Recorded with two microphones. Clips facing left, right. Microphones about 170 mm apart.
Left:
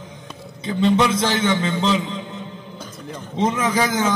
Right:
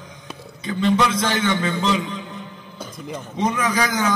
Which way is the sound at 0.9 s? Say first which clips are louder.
Left 2 dB; 25° left (ahead or behind).